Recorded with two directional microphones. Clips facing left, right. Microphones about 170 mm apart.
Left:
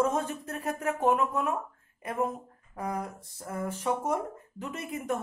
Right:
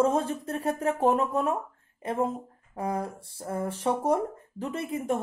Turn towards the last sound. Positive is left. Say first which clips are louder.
# right 4 dB
turn(degrees=-30)  # may be behind; listen again after turning